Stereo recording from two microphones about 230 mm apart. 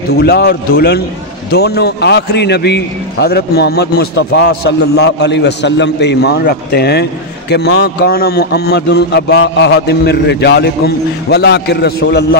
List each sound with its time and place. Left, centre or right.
0.1 s a man's voice: left